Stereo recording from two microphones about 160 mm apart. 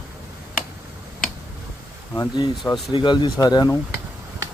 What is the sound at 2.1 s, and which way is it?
Speech, 20° left (ahead or behind).